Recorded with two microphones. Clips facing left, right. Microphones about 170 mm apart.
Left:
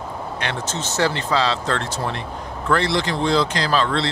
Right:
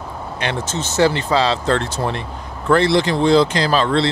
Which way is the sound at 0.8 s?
10° right (ahead or behind).